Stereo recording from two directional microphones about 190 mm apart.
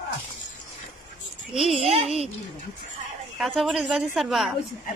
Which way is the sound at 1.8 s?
30° right (ahead or behind).